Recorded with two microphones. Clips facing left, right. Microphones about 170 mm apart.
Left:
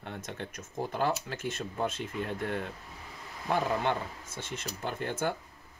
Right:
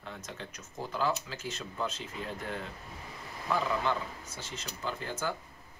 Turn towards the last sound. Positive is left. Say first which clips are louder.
# left 3 dB
turn(degrees=55)  # may be behind; listen again after turning